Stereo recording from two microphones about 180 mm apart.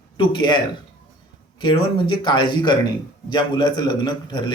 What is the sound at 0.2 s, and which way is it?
Speech, 25° left (ahead or behind).